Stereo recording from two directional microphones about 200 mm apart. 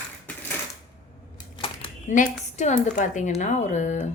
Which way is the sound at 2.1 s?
35° left (ahead or behind).